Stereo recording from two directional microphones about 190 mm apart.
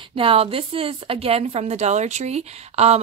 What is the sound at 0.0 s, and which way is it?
A woman's voice, 30° right (ahead or behind).